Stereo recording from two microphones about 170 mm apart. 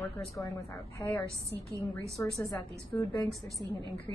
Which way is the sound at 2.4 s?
20° left (ahead or behind).